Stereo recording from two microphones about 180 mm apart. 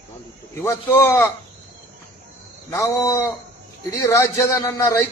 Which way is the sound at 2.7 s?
15° left (ahead or behind).